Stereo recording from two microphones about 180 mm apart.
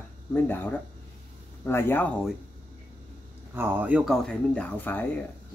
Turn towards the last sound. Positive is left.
turn(degrees=10)  # may be behind; listen again after turning